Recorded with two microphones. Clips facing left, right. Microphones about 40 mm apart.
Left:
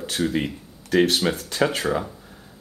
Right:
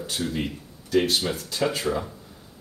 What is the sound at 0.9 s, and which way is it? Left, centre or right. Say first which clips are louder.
Speech: left 3 dB; left.